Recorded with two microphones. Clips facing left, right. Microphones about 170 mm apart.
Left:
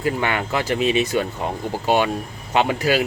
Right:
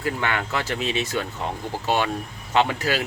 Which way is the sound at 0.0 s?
15° left (ahead or behind).